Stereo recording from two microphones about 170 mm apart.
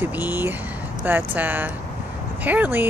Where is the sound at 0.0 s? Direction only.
10° right (ahead or behind).